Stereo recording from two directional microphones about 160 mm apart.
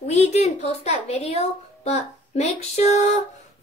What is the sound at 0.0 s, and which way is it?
A woman's voice, 45° left (ahead or behind).